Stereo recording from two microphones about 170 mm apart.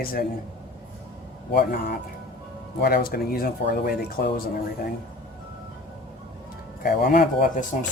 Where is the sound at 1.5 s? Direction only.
65° left (ahead or behind).